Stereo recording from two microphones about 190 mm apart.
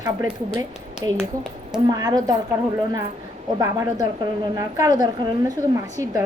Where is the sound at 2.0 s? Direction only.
20° right (ahead or behind).